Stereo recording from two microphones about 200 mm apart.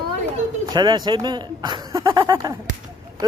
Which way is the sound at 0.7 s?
20° right (ahead or behind).